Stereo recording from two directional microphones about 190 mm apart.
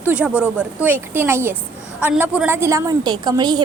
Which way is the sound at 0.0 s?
5° right (ahead or behind).